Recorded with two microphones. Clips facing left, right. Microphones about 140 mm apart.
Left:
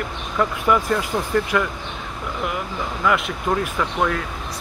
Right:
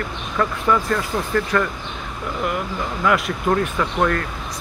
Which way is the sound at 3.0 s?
Centre (ahead or behind).